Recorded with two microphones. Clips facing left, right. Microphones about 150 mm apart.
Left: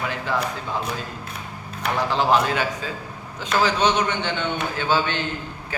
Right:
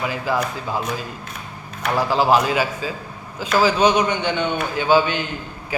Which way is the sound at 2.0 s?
5° right (ahead or behind).